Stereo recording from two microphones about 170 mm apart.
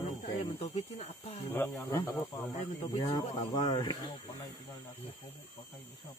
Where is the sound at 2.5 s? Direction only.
35° left (ahead or behind).